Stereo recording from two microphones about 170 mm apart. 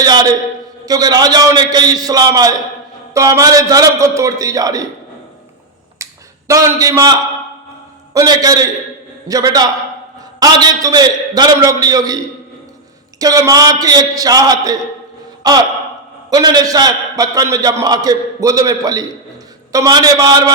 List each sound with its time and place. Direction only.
0.0 s a man's voice: 25° right (ahead or behind)
6.0 s finger snapping: 15° right (ahead or behind)
6.5 s a man's voice: 20° right (ahead or behind)